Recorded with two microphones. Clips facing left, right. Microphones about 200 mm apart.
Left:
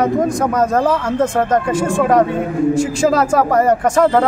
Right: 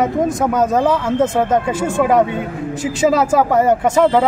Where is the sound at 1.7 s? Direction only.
25° right (ahead or behind).